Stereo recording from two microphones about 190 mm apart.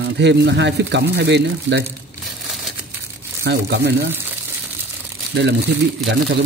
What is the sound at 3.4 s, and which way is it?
Speech, 60° right (ahead or behind).